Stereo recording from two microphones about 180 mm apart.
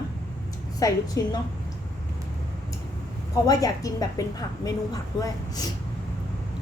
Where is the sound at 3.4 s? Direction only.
20° left (ahead or behind).